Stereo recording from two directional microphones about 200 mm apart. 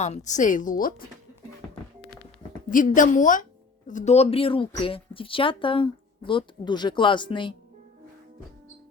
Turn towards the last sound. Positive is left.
turn(degrees=25)  # may be behind; listen again after turning